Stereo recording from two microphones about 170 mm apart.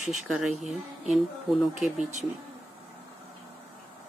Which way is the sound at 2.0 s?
45° right (ahead or behind).